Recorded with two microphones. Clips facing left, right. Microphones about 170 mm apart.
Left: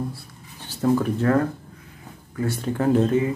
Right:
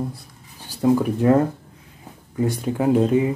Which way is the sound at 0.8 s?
10° right (ahead or behind).